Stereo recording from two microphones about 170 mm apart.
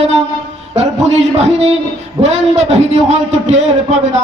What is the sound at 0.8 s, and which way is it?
A man's voice, 40° right (ahead or behind).